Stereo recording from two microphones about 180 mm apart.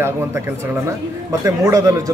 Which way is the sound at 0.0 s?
15° right (ahead or behind).